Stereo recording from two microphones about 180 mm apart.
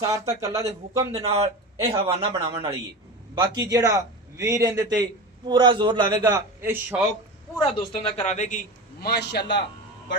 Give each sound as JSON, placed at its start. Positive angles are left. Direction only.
{"t": 0.0, "sound": "speech", "side_deg": -15}
{"t": 1.9, "sound": "a man's voice", "side_deg": -30}
{"t": 7.5, "sound": "a man's voice", "side_deg": 25}
{"t": 9.0, "sound": "a man's voice", "side_deg": 65}